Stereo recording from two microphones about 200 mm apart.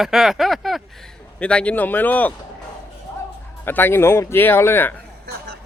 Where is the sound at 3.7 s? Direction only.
10° left (ahead or behind).